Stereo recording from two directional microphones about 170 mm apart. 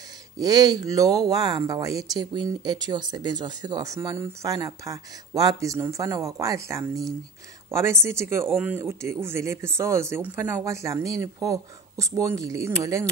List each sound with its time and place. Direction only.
0.4 s speech: 25° right (ahead or behind)
8.5 s speech: centre (ahead or behind)
8.7 s speech: 15° right (ahead or behind)